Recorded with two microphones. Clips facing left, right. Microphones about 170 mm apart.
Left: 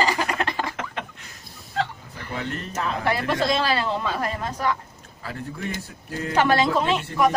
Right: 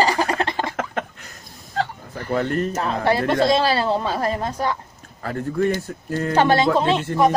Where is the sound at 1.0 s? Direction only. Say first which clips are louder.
Right 6 dB; 45° right (ahead or behind).